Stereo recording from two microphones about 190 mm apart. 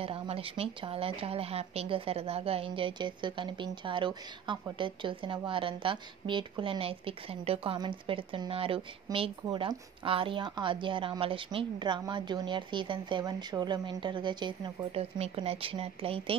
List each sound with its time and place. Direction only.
0.0 s a woman's voice: 30° right (ahead or behind)